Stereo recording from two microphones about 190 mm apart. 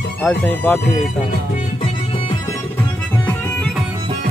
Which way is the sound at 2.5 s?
10° left (ahead or behind).